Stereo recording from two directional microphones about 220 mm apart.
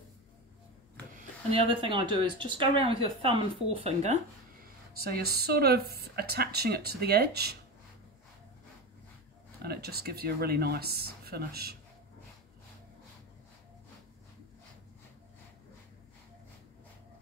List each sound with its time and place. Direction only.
1.1 s speech: 25° right (ahead or behind)
4.9 s speech: 45° right (ahead or behind)
9.6 s speech: 45° right (ahead or behind)